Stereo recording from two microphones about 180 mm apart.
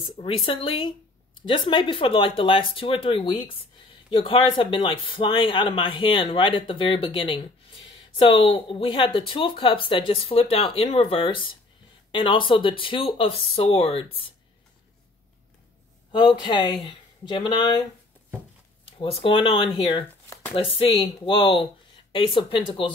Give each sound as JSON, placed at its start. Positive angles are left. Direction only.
{"t": 0.5, "sound": "speech", "side_deg": 30}
{"t": 16.1, "sound": "speech", "side_deg": 25}
{"t": 18.9, "sound": "speech", "side_deg": 30}